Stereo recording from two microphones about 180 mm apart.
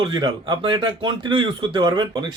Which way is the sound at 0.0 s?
25° right (ahead or behind).